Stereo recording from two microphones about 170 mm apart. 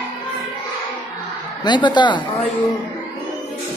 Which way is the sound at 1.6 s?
25° left (ahead or behind).